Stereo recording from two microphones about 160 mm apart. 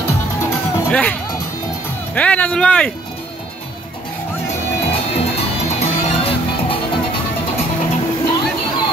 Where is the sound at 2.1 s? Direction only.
10° left (ahead or behind).